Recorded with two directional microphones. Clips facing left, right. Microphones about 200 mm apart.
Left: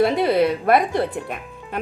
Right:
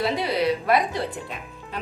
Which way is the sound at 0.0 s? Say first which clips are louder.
Left 6 dB; 55° left (ahead or behind).